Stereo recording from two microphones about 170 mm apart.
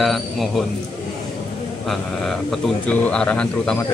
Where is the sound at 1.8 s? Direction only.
Centre (ahead or behind).